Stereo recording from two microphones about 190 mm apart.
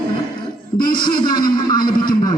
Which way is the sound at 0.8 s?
25° left (ahead or behind).